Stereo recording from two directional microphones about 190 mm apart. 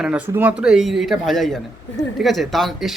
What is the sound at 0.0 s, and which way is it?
Speech, 5° right (ahead or behind).